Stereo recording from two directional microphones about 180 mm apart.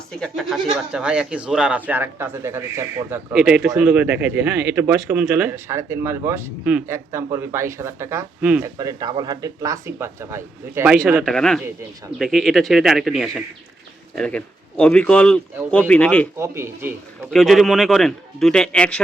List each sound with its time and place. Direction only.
0.2 s a man's voice: centre (ahead or behind)
8.6 s speech: 20° right (ahead or behind)
11.2 s a man's voice: centre (ahead or behind)
16.4 s speech: 15° right (ahead or behind)
17.3 s a man's voice: centre (ahead or behind)